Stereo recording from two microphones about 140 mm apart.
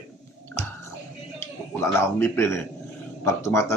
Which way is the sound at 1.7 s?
15° left (ahead or behind).